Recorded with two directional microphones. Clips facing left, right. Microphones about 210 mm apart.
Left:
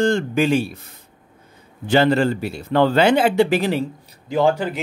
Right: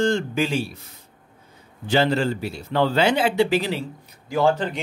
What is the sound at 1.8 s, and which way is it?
Speech, 55° left (ahead or behind).